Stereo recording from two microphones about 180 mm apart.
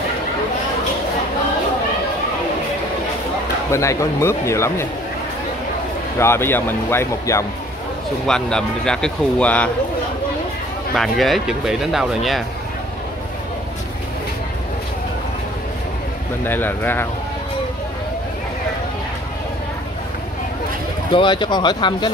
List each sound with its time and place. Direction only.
3.7 s speech: 15° left (ahead or behind)
6.1 s speech: 15° left (ahead or behind)
8.3 s speech: 5° left (ahead or behind)
11.0 s speech: centre (ahead or behind)
16.4 s speech: 10° left (ahead or behind)
21.1 s speech: 25° left (ahead or behind)